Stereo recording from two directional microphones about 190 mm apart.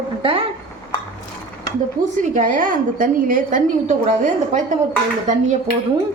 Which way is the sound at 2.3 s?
40° right (ahead or behind).